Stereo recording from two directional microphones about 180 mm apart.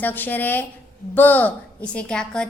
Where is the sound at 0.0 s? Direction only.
10° left (ahead or behind).